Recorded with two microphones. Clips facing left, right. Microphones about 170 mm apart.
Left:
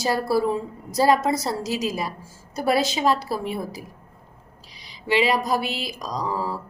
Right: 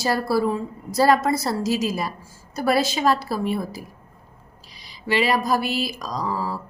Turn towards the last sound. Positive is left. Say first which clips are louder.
# even
turn(degrees=15)  # may be behind; listen again after turning